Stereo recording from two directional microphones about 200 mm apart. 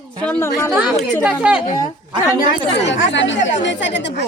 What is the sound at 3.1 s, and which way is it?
Speech, 65° left (ahead or behind).